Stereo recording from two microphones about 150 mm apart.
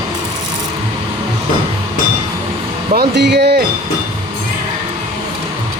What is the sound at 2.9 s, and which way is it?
Music, 90° right.